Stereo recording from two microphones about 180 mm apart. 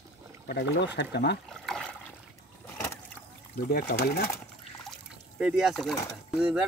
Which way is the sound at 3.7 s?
60° left (ahead or behind).